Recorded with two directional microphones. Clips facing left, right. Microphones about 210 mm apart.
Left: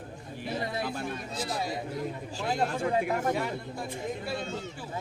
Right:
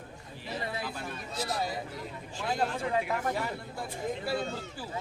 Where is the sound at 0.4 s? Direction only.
55° left (ahead or behind).